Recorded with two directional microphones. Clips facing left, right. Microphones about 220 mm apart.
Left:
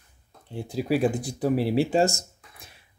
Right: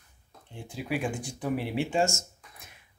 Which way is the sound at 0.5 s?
35° left (ahead or behind).